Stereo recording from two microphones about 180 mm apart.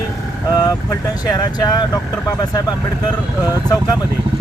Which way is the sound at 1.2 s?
20° left (ahead or behind).